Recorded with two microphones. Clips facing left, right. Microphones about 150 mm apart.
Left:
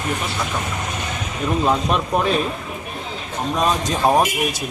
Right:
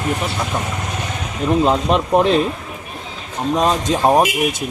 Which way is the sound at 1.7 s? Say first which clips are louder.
Right 3 dB; 20° right (ahead or behind).